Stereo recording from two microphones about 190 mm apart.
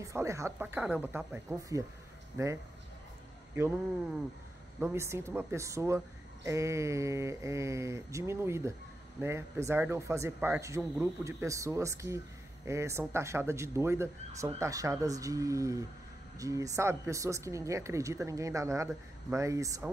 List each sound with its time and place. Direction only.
0.0 s a woman's voice: 15° right (ahead or behind)
4.7 s a woman's voice: 10° right (ahead or behind)